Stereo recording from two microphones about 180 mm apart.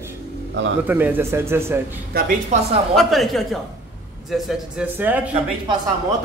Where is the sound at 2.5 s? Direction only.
40° right (ahead or behind).